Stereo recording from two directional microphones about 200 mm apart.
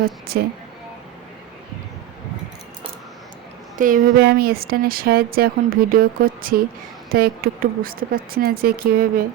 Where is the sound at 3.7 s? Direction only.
40° right (ahead or behind).